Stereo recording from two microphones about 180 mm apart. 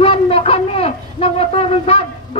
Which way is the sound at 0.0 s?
30° left (ahead or behind).